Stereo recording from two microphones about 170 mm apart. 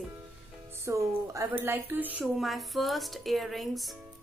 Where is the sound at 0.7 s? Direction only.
15° right (ahead or behind); by 4.0 s centre (ahead or behind).